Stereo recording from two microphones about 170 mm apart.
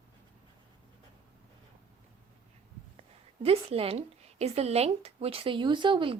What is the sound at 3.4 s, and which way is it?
Speech, 35° right (ahead or behind).